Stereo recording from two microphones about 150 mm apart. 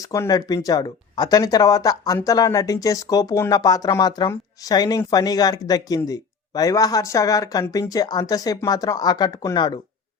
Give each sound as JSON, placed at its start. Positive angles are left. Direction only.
{"t": 0.0, "sound": "speech", "side_deg": 20}